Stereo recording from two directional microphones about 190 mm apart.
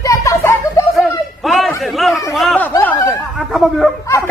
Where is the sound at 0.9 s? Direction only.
Centre (ahead or behind).